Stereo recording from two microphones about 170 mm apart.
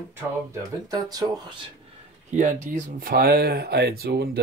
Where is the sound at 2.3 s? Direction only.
45° right (ahead or behind).